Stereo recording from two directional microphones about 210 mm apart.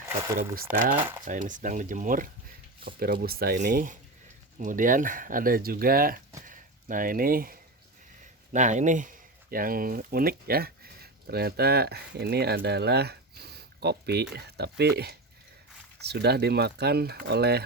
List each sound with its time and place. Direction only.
0.3 s speech: 40° right (ahead or behind)